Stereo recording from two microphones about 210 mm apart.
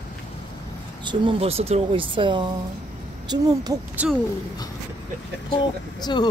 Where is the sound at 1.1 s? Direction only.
25° right (ahead or behind).